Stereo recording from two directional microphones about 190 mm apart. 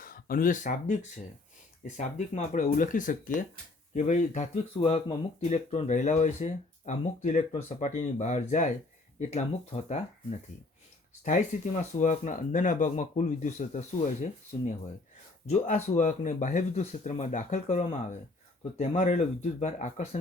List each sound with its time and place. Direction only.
0.0 s speech: 50° left (ahead or behind)
11.3 s speech: 40° left (ahead or behind)